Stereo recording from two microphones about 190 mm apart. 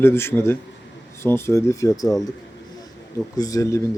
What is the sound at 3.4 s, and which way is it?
Speech, 20° left (ahead or behind).